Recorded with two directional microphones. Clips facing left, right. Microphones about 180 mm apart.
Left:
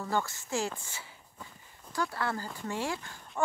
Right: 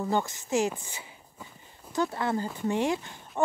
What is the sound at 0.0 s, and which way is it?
Speech, 20° right (ahead or behind).